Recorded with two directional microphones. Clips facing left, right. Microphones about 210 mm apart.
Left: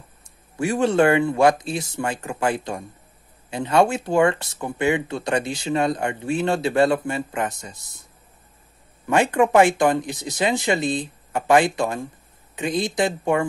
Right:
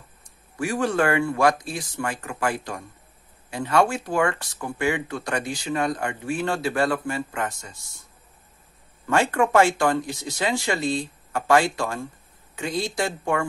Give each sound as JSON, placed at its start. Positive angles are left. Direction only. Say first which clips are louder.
{"t": 0.6, "sound": "speech", "louder": "left 4 dB", "side_deg": 25}
{"t": 9.0, "sound": "speech", "louder": "left 3 dB", "side_deg": 15}